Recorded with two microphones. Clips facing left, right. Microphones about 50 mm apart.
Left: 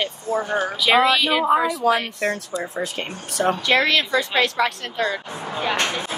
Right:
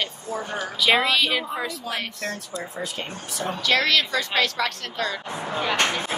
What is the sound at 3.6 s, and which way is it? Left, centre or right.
Speech, left.